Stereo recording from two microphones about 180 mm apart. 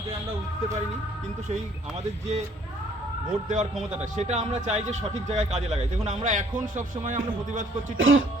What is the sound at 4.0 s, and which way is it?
Speech, 40° right (ahead or behind).